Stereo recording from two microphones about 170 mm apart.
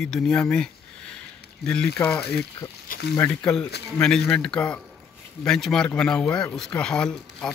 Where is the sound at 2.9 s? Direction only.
70° left (ahead or behind).